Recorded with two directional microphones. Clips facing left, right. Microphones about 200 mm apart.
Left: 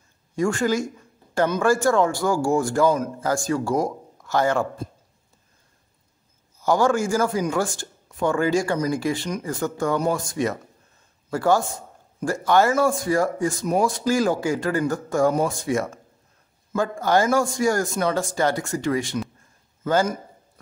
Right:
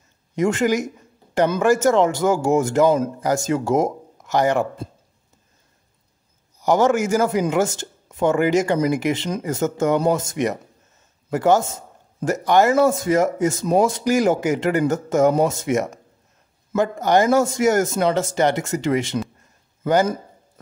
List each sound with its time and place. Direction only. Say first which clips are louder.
0.4 s a man's voice: right 3 dB; 20° right (ahead or behind)
6.6 s a man's voice: right 3 dB; 20° right (ahead or behind)